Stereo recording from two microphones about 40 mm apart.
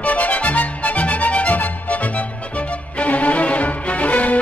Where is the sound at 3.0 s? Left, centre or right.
Left.